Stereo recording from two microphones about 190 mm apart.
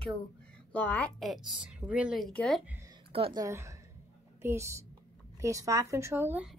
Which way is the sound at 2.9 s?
30° right (ahead or behind).